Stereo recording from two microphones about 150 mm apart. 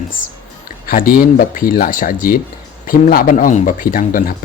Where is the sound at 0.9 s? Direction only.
70° left (ahead or behind).